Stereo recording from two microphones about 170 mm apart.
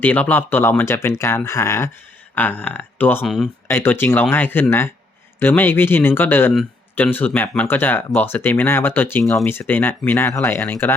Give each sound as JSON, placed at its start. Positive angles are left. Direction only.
{"t": 0.0, "sound": "speech", "side_deg": 10}
{"t": 3.7, "sound": "speech", "side_deg": 15}